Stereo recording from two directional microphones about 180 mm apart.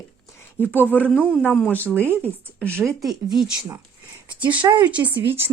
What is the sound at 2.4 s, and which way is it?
Speech, 10° right (ahead or behind).